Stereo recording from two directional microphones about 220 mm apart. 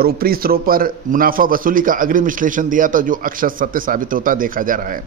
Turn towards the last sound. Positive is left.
turn(degrees=-40)  # may be behind; listen again after turning